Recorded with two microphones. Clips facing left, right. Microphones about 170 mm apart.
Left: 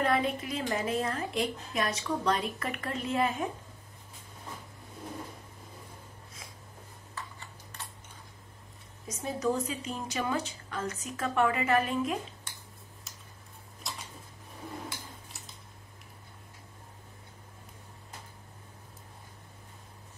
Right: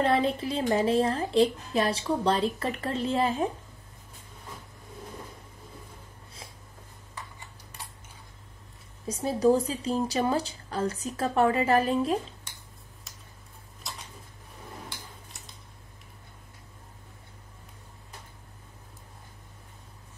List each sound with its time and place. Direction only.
0.0 s a woman's voice: 30° right (ahead or behind)
9.0 s a woman's voice: 30° right (ahead or behind)
13.9 s a sound: centre (ahead or behind)